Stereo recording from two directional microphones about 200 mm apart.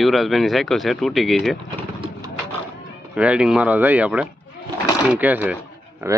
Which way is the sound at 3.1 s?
5° right (ahead or behind).